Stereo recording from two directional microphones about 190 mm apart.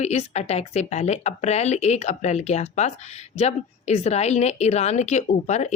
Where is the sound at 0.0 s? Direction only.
35° left (ahead or behind).